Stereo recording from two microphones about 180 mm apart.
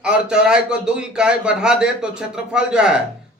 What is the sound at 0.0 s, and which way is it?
Speech, 5° right (ahead or behind).